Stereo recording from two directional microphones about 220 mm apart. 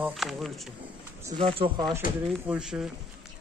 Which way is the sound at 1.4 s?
25° right (ahead or behind).